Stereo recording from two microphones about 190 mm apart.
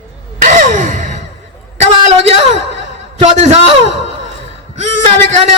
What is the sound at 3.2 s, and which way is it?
Speech, 35° right (ahead or behind).